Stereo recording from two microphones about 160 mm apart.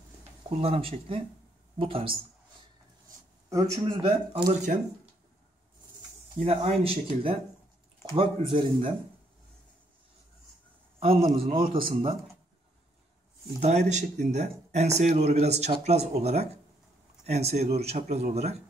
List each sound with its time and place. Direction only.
0.6 s speech: 35° right (ahead or behind)
3.4 s a man's voice: 20° right (ahead or behind)
4.5 s speech: 50° right (ahead or behind)
6.4 s speech: 35° right (ahead or behind)
11.0 s speech: 35° right (ahead or behind)
13.6 s speech: 45° right (ahead or behind)